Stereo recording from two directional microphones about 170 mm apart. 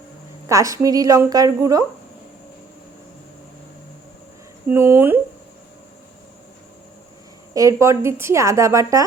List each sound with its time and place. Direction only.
0.4 s a woman's voice: 20° right (ahead or behind)
4.7 s a woman's voice: 15° right (ahead or behind)
7.5 s a woman's voice: 20° right (ahead or behind)